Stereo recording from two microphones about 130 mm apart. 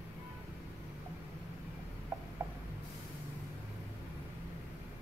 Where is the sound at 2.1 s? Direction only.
20° right (ahead or behind).